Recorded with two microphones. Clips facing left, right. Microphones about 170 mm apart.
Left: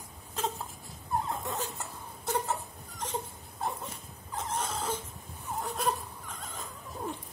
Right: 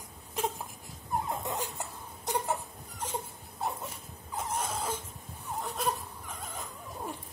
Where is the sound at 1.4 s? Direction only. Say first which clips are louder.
Even; 15° right (ahead or behind).